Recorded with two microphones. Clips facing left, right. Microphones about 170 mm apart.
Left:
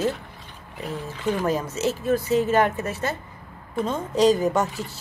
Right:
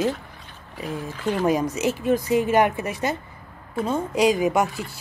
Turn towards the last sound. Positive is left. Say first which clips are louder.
# right 1 dB
turn(degrees=-10)  # may be behind; listen again after turning